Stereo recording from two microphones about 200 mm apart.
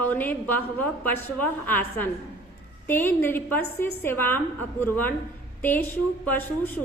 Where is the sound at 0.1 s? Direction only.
10° left (ahead or behind).